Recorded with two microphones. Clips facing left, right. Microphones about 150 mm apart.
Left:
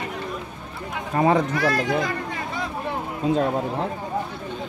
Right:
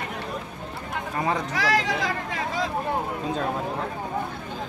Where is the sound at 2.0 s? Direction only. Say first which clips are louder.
Even; 90° right.